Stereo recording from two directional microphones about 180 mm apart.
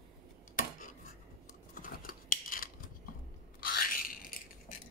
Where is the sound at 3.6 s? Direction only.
50° left (ahead or behind).